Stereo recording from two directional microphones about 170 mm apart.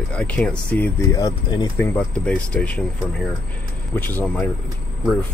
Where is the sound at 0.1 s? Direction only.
5° left (ahead or behind).